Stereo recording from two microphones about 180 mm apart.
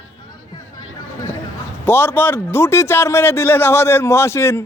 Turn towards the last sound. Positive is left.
turn(degrees=15)  # may be behind; listen again after turning